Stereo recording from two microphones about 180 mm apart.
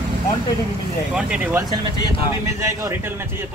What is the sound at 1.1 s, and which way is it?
Speech, 5° right (ahead or behind).